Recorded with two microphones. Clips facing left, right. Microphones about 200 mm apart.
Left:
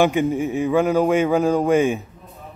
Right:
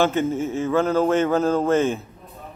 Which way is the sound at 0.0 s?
15° left (ahead or behind).